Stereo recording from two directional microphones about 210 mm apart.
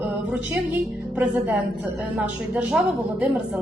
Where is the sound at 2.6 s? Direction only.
5° right (ahead or behind).